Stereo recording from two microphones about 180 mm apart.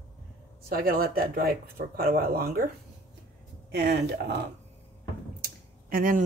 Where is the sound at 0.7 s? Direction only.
55° right (ahead or behind).